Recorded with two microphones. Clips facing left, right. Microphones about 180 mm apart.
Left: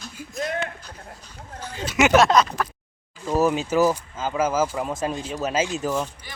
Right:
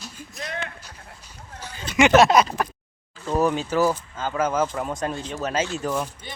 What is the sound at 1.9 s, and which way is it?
Speech, 5° left (ahead or behind).